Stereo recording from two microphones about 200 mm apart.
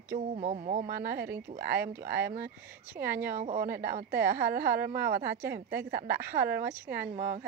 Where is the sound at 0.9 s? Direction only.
50° right (ahead or behind).